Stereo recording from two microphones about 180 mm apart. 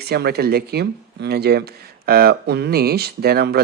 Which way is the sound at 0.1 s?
60° right (ahead or behind).